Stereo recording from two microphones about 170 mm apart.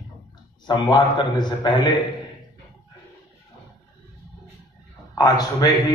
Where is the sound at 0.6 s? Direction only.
25° left (ahead or behind).